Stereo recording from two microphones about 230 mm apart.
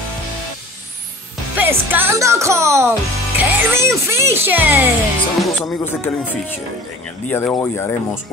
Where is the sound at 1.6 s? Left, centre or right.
Centre.